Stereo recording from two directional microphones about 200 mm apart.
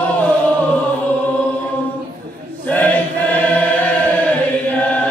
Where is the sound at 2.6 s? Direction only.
10° left (ahead or behind).